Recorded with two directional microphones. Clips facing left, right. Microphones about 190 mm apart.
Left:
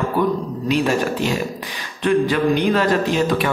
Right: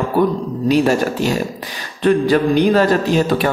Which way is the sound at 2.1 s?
35° right (ahead or behind).